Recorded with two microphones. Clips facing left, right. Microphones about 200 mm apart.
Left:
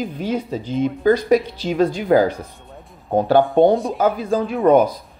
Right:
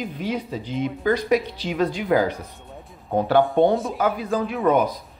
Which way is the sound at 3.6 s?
35° left (ahead or behind).